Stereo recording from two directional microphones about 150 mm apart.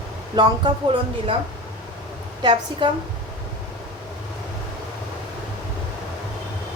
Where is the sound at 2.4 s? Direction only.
30° right (ahead or behind).